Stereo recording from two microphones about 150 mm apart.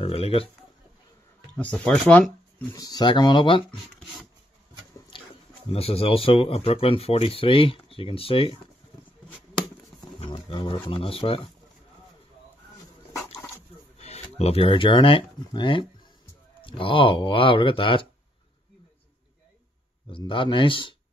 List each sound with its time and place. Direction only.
0.0 s a sound: 40° left (ahead or behind)
1.6 s speech: 10° left (ahead or behind)
2.7 s speech: 25° left (ahead or behind)
5.1 s a sound: 35° left (ahead or behind)
5.7 s speech: 40° left (ahead or behind)
10.2 s speech: 35° left (ahead or behind)
13.9 s speech: 45° left (ahead or behind)
20.1 s speech: 35° left (ahead or behind)